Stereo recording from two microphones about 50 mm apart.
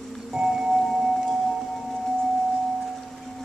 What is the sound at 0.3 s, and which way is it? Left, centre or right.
Music, centre.